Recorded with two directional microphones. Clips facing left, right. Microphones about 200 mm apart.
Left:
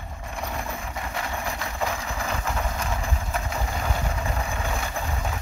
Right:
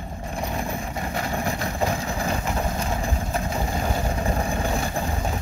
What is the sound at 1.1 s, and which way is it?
Vehicle, 40° right (ahead or behind).